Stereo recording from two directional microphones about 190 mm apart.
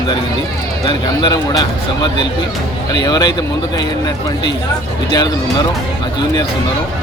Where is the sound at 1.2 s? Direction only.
20° left (ahead or behind).